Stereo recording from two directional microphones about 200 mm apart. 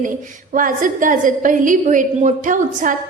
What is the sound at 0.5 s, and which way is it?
A woman's voice, 40° right (ahead or behind).